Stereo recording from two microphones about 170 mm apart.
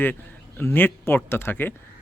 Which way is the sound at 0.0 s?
10° left (ahead or behind).